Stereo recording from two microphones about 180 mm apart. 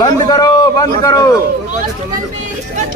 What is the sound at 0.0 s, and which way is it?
A man's voice, 20° left (ahead or behind).